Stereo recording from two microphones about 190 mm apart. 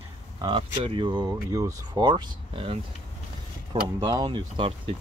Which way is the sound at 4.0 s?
20° right (ahead or behind).